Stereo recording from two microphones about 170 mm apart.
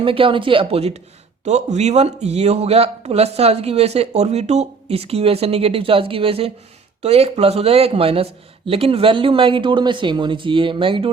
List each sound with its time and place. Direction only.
0.0 s speech: 30° right (ahead or behind)